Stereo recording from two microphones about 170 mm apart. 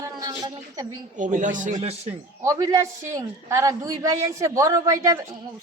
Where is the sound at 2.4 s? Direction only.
20° right (ahead or behind).